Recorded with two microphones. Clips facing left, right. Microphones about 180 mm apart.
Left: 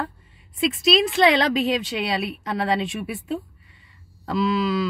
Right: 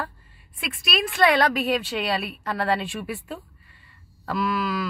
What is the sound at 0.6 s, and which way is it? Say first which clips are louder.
Speech: left 9 dB; 25° left (ahead or behind).